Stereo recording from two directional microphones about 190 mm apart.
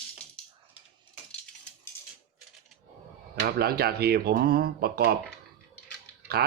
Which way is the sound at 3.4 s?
55° right (ahead or behind).